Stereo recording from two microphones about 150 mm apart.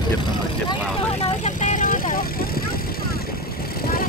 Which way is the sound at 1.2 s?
55° left (ahead or behind).